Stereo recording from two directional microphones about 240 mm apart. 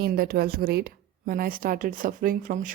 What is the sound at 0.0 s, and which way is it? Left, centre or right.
Speech, right.